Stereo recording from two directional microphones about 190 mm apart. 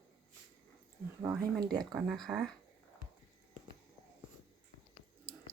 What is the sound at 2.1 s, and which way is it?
Speech, 5° right (ahead or behind).